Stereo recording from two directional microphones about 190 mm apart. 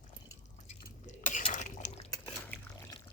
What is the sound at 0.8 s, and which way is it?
Stir, 40° left (ahead or behind).